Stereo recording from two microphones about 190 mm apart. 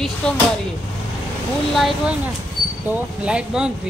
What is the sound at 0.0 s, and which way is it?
Speech, 5° left (ahead or behind).